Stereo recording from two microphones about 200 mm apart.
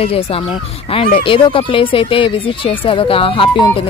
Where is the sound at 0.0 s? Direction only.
30° left (ahead or behind).